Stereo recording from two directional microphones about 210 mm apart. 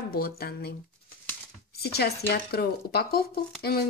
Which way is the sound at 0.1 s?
45° left (ahead or behind).